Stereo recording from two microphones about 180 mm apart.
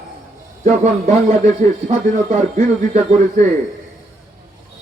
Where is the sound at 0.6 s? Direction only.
40° right (ahead or behind).